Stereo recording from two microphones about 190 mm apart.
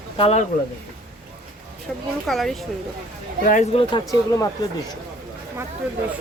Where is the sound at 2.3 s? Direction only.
Centre (ahead or behind).